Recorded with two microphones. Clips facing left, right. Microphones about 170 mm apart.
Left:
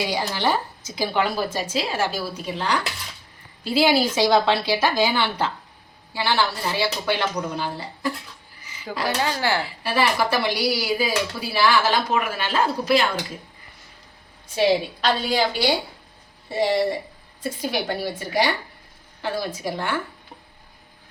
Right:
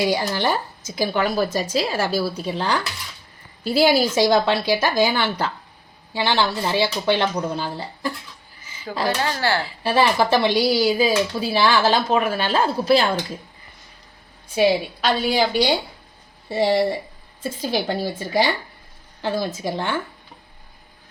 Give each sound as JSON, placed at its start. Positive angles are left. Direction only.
{"t": 0.1, "sound": "a woman's voice", "side_deg": -45}
{"t": 6.1, "sound": "speech", "side_deg": -20}
{"t": 8.9, "sound": "speech", "side_deg": 5}
{"t": 9.9, "sound": "speech", "side_deg": -25}
{"t": 14.5, "sound": "a woman's voice", "side_deg": -10}
{"t": 16.5, "sound": "speech", "side_deg": -30}